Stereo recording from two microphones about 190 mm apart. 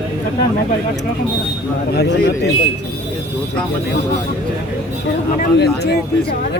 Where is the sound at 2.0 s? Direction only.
60° left (ahead or behind).